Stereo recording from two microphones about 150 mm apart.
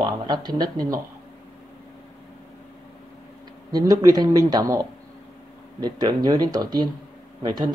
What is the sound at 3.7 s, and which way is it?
Speech, 25° right (ahead or behind).